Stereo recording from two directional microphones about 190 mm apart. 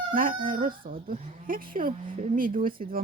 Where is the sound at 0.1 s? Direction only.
50° right (ahead or behind).